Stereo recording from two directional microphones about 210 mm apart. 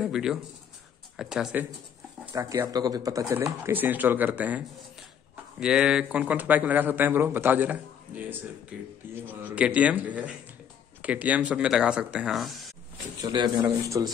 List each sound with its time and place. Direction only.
0.0 s speech: centre (ahead or behind)
2.3 s speech: 15° right (ahead or behind); by 12.6 s centre (ahead or behind)
13.2 s speech: 20° right (ahead or behind)